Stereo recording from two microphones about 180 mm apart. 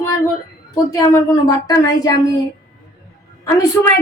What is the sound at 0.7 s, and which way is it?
Speech, 20° left (ahead or behind).